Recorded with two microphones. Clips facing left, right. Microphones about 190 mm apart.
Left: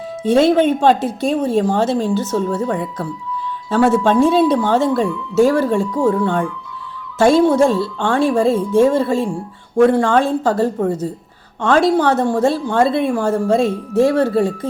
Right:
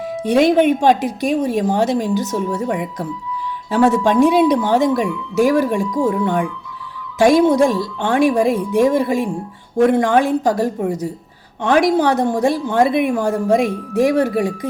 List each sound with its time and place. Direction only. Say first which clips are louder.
0.2 s a woman's voice: left 1 dB; 15° right (ahead or behind)